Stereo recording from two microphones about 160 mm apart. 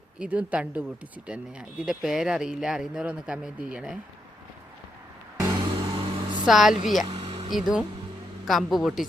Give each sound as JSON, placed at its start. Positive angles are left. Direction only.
{"t": 0.2, "sound": "a woman's voice", "side_deg": -10}
{"t": 5.4, "sound": "music", "side_deg": -20}
{"t": 6.0, "sound": "vehicle", "side_deg": -30}
{"t": 6.4, "sound": "a woman's voice", "side_deg": 0}
{"t": 7.1, "sound": "vehicle", "side_deg": -35}
{"t": 7.5, "sound": "speech", "side_deg": -5}